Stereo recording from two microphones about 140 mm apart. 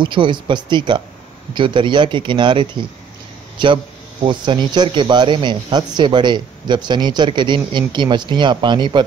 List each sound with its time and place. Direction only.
0.0 s speech: 35° right (ahead or behind)